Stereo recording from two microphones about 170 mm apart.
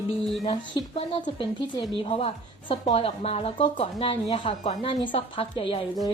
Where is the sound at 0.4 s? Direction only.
30° left (ahead or behind).